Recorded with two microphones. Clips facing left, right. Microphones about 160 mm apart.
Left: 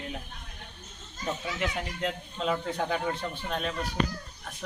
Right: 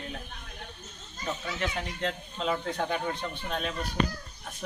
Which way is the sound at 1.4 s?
10° left (ahead or behind).